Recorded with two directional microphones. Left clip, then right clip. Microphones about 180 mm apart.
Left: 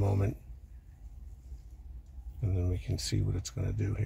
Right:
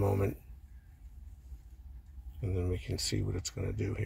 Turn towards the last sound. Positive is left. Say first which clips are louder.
# right 1 dB
turn(degrees=10)  # may be behind; listen again after turning